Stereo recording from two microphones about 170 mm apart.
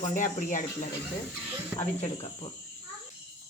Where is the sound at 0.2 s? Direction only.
45° left (ahead or behind).